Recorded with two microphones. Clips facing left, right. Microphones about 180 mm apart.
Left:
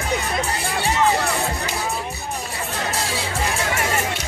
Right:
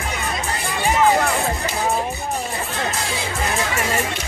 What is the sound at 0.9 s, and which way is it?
Music, 50° right (ahead or behind).